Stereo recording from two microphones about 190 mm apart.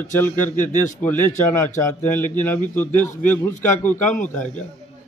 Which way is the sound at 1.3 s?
40° left (ahead or behind).